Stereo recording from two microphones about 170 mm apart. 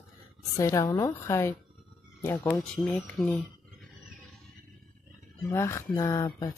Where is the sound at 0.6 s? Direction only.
20° left (ahead or behind).